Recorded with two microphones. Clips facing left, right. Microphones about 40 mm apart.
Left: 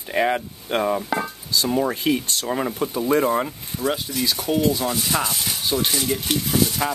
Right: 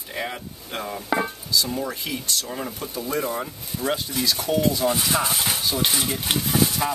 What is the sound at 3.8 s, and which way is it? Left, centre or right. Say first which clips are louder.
Speech: left 2 dB; left.